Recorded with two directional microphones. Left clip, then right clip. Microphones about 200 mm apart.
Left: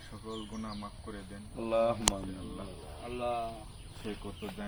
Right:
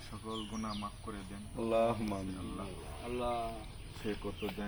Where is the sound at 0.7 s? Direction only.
5° left (ahead or behind).